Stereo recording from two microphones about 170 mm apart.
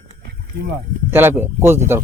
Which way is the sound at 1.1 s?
15° right (ahead or behind).